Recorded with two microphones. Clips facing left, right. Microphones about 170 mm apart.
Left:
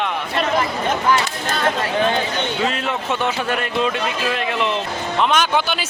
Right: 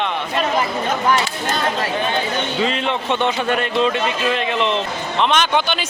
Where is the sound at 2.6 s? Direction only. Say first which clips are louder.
Right 2 dB; 5° left (ahead or behind).